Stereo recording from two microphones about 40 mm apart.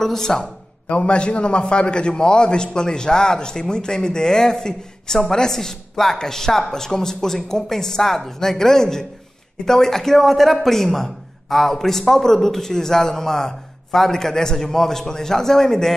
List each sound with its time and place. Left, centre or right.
0.0 s speech: centre
0.8 s a man's voice: left; by 15.9 s centre